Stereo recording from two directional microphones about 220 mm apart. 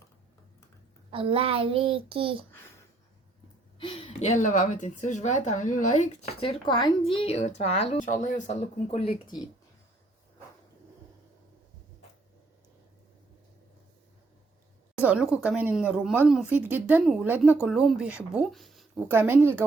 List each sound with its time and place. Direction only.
1.1 s child singing: 25° right (ahead or behind)
3.8 s a woman's voice: 25° left (ahead or behind)
15.0 s speech: 5° right (ahead or behind)